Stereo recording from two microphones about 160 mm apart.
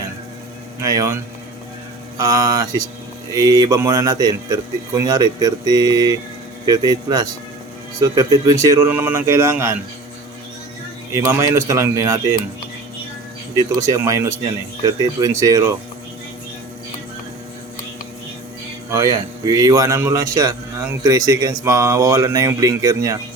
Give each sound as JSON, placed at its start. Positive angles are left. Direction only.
{"t": 0.8, "sound": "a man's voice", "side_deg": -20}
{"t": 11.1, "sound": "speech", "side_deg": -15}
{"t": 13.6, "sound": "a man's voice", "side_deg": -20}
{"t": 18.9, "sound": "a man's voice", "side_deg": -20}